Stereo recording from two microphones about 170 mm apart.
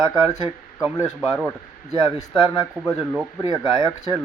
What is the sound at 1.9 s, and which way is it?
A man's voice, 25° left (ahead or behind).